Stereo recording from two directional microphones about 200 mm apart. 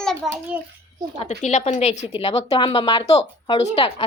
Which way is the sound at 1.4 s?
35° left (ahead or behind).